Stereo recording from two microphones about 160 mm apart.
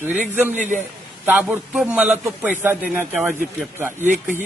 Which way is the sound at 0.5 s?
50° right (ahead or behind).